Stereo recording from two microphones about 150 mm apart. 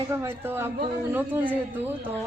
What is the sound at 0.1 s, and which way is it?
A woman's voice, 15° right (ahead or behind).